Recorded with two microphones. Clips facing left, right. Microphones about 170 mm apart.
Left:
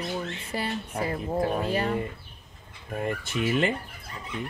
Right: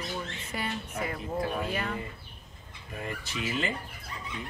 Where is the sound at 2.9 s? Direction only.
50° left (ahead or behind).